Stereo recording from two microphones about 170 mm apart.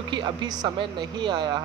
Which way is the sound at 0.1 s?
25° right (ahead or behind).